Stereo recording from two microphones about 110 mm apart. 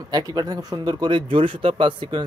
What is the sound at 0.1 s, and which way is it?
Speech, 40° right (ahead or behind).